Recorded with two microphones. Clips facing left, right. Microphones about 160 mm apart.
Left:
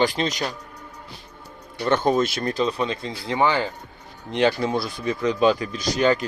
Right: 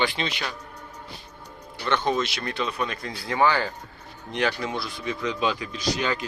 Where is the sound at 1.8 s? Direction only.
45° left (ahead or behind); by 4.7 s 25° left (ahead or behind).